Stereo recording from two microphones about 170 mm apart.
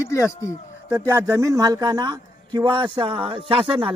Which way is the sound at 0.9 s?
15° right (ahead or behind).